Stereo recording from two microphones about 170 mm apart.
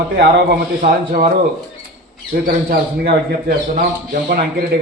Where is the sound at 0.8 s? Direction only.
55° right (ahead or behind).